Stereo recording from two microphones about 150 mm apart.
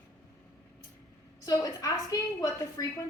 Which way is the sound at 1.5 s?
25° left (ahead or behind).